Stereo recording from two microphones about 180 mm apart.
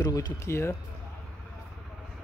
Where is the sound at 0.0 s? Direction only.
20° left (ahead or behind).